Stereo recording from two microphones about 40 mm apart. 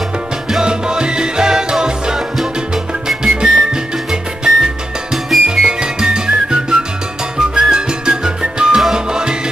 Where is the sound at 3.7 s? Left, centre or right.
Centre.